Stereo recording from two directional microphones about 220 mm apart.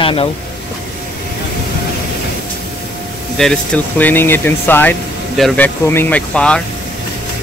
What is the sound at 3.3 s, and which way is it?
Speech, 5° left (ahead or behind).